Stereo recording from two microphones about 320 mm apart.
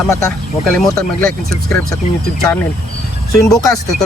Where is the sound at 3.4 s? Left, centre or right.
Centre.